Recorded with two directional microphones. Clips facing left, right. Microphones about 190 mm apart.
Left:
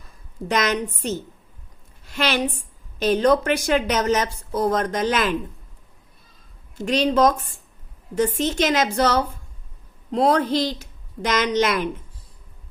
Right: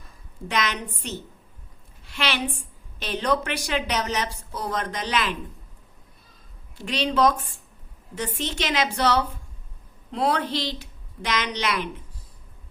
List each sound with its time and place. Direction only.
0.4 s a woman's voice: 45° left (ahead or behind)
6.7 s speech: 45° left (ahead or behind)